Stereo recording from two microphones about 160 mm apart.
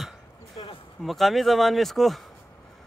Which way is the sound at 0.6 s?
35° left (ahead or behind).